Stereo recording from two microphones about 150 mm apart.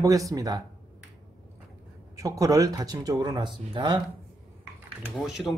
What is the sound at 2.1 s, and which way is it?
Speech, 20° right (ahead or behind).